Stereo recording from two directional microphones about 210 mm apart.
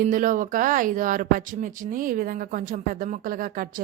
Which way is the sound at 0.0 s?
40° right (ahead or behind).